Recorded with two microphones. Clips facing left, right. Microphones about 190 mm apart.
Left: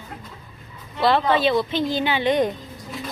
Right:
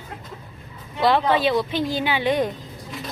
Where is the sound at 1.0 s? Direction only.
10° right (ahead or behind).